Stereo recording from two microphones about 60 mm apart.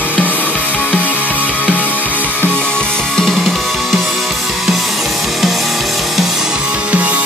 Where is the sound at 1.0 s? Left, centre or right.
Right.